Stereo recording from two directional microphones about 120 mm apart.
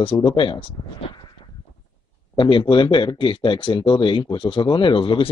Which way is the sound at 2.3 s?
40° left (ahead or behind).